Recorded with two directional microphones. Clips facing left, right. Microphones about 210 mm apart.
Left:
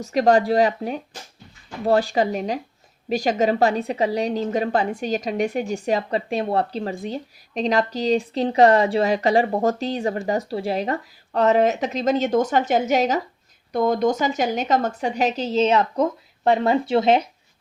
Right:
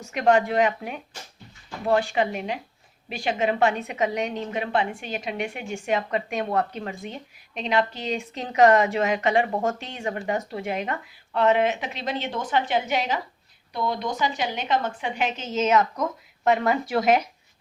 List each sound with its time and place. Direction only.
0.0 s a woman's voice: 35° left (ahead or behind)